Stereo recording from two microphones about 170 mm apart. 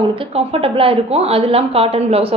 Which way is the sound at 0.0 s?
30° right (ahead or behind).